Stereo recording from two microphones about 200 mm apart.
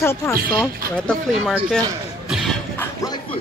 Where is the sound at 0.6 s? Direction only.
5° left (ahead or behind).